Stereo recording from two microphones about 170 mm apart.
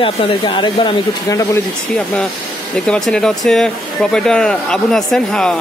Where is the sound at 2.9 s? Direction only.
5° left (ahead or behind).